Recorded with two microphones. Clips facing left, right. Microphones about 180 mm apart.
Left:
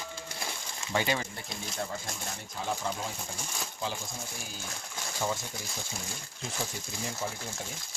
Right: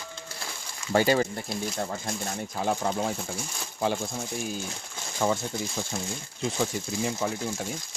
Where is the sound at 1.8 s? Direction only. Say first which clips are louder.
Right 5 dB; 55° right (ahead or behind).